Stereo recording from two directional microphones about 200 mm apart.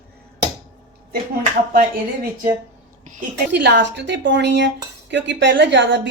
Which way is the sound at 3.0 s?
40° right (ahead or behind).